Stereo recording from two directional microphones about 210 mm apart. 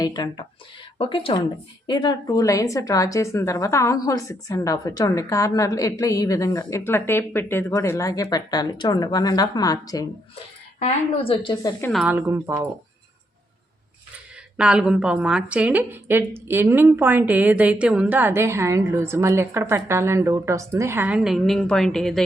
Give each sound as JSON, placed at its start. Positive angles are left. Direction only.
{"t": 0.0, "sound": "a woman's voice", "side_deg": 20}
{"t": 11.8, "sound": "a woman's voice", "side_deg": 0}
{"t": 12.1, "sound": "a woman's voice", "side_deg": -10}
{"t": 14.6, "sound": "a woman's voice", "side_deg": -5}